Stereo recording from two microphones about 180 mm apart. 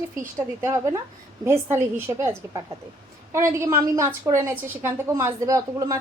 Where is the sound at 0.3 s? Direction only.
15° right (ahead or behind).